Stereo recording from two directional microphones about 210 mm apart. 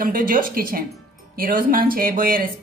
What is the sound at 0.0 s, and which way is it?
Speech, 40° right (ahead or behind).